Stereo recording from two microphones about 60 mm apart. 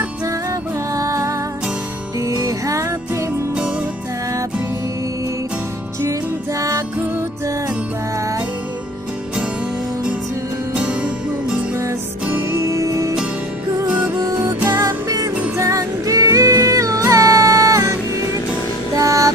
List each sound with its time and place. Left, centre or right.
0.5 s music: right
10.7 s music: centre
12.4 s music: right
13.8 s music: right
14.7 s music: right
18.9 s music: right